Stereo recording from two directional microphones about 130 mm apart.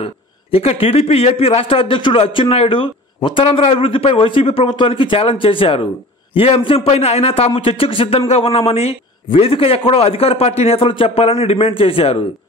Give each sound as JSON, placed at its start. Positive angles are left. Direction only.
{"t": 0.0, "sound": "a man's voice", "side_deg": 50}